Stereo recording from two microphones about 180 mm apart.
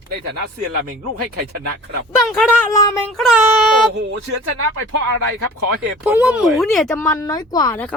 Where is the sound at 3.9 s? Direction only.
75° right (ahead or behind).